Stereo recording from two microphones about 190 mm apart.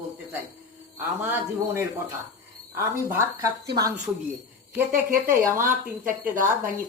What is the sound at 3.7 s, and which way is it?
Speech, 20° right (ahead or behind).